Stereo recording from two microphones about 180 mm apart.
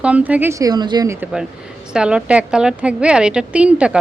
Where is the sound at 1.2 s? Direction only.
5° right (ahead or behind).